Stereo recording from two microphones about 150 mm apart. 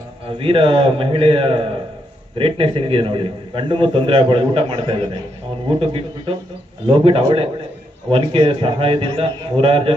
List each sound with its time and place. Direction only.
0.3 s a man's voice: 35° right (ahead or behind)